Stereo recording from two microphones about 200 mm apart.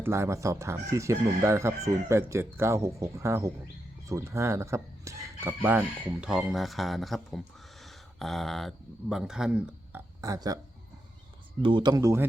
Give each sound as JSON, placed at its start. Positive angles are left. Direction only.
{"t": 0.0, "sound": "speech", "side_deg": -15}
{"t": 10.2, "sound": "speech", "side_deg": -20}
{"t": 11.6, "sound": "speech", "side_deg": -25}